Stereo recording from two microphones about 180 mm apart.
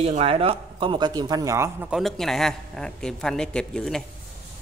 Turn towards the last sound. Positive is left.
turn(degrees=5)  # may be behind; listen again after turning